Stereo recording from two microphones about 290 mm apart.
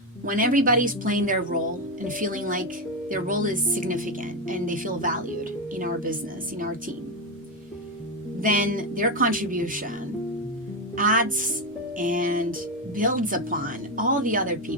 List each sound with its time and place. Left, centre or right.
0.3 s speech: right
8.4 s speech: right
10.9 s speech: right